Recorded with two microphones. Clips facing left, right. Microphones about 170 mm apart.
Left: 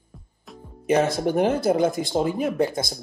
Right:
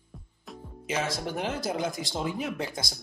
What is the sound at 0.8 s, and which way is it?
Speech, 60° left (ahead or behind).